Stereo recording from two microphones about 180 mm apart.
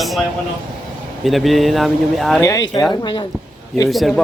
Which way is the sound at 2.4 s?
20° left (ahead or behind).